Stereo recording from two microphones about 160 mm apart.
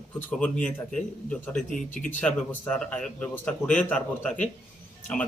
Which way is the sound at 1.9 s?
55° left (ahead or behind).